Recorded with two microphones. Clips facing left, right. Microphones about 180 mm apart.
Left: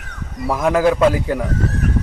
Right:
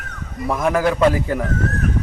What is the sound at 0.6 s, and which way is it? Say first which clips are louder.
Speech: left 2 dB; 20° left (ahead or behind).